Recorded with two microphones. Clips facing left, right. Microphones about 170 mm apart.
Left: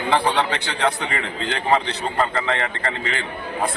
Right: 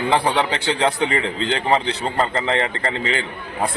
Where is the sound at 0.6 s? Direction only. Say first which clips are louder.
Right 4 dB; 25° right (ahead or behind).